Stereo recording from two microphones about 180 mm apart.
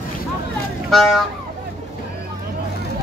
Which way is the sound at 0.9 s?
5° left (ahead or behind).